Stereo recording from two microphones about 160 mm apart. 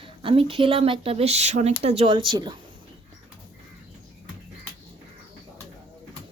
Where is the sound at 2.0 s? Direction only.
30° right (ahead or behind).